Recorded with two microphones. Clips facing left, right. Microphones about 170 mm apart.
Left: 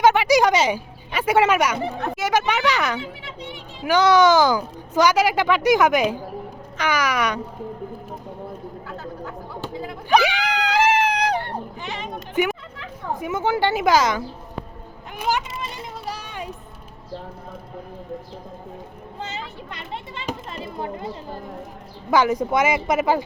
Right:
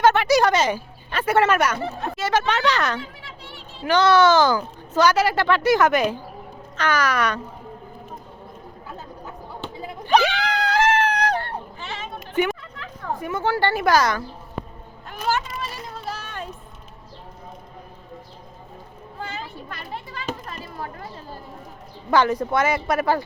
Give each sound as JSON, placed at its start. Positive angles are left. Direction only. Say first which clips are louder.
{"t": 0.0, "sound": "speech", "louder": "left 1 dB", "side_deg": 15}
{"t": 10.1, "sound": "screaming", "louder": "even", "side_deg": 10}
{"t": 13.1, "sound": "speech", "louder": "left 1 dB", "side_deg": 15}
{"t": 15.1, "sound": "a sound", "louder": "even", "side_deg": 15}
{"t": 16.0, "sound": "music", "louder": "even", "side_deg": 15}
{"t": 19.2, "sound": "children playing", "louder": "even", "side_deg": 20}
{"t": 22.1, "sound": "speech", "louder": "left 1 dB", "side_deg": 10}